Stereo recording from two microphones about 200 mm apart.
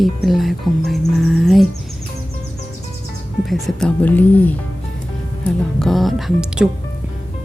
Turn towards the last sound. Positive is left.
turn(degrees=0)  # may be behind; listen again after turning